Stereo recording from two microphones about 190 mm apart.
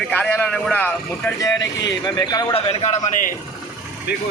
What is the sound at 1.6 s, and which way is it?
Speech, 65° left (ahead or behind).